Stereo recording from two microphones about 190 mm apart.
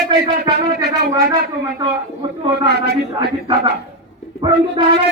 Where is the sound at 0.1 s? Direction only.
20° right (ahead or behind).